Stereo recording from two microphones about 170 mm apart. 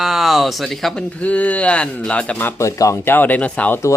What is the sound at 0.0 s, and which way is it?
Speech, centre (ahead or behind).